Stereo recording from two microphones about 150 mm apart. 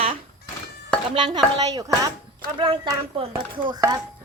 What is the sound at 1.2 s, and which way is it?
Speech, 30° right (ahead or behind).